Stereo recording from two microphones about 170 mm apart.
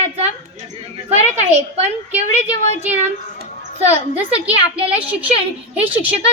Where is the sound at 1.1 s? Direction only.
40° right (ahead or behind).